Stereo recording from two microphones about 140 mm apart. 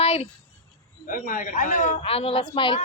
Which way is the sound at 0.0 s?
45° left (ahead or behind).